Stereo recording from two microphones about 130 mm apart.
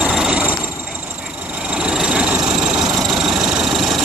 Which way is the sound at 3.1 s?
5° right (ahead or behind).